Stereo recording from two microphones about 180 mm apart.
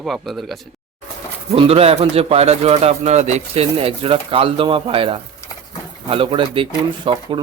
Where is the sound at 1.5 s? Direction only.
35° right (ahead or behind).